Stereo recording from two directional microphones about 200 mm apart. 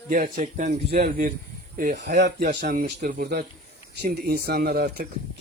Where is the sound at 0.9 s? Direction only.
50° right (ahead or behind).